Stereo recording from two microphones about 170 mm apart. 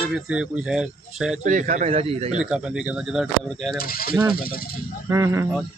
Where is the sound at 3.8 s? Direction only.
60° left (ahead or behind).